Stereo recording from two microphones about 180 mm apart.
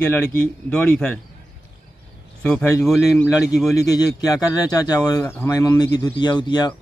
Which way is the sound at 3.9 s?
20° left (ahead or behind).